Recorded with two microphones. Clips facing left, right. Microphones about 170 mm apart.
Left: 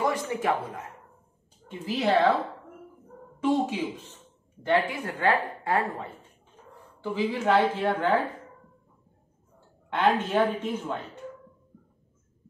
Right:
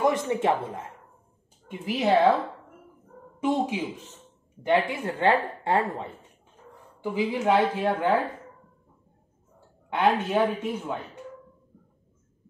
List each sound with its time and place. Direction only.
0.0 s a sound: 25° right (ahead or behind)
1.7 s speech: 20° right (ahead or behind)
4.6 s a woman's voice: 25° right (ahead or behind)
9.8 s speech: 10° right (ahead or behind)